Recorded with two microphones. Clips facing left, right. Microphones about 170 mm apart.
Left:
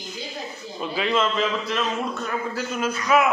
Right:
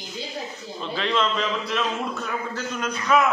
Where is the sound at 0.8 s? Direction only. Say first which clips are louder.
Left 2 dB; 5° left (ahead or behind).